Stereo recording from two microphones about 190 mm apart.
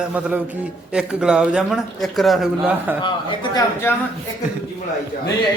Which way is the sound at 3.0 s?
25° left (ahead or behind).